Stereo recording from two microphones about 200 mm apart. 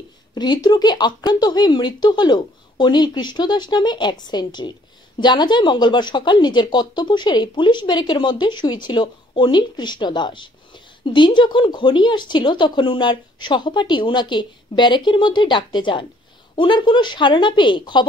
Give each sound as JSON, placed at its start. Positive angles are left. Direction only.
{"t": 0.3, "sound": "speech", "side_deg": 20}